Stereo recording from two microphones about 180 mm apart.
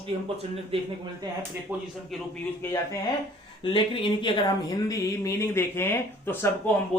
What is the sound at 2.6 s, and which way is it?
Speech, 15° left (ahead or behind).